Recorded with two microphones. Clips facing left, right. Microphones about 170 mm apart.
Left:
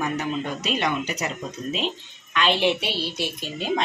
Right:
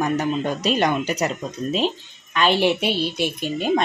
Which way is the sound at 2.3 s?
45° right (ahead or behind).